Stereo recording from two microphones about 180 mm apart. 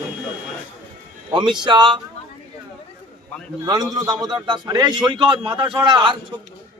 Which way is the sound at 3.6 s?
20° right (ahead or behind).